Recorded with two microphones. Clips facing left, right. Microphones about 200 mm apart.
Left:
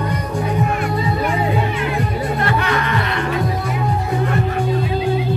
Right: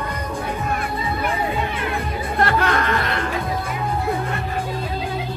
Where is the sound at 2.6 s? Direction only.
50° right (ahead or behind).